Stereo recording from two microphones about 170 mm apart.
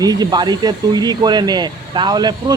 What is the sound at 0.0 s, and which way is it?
Speech, 25° right (ahead or behind).